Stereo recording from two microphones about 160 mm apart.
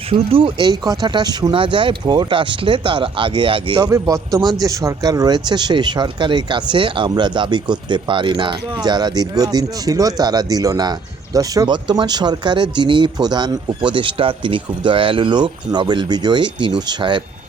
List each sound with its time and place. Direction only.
0.1 s speech: 35° right (ahead or behind)
3.8 s speech: 20° right (ahead or behind)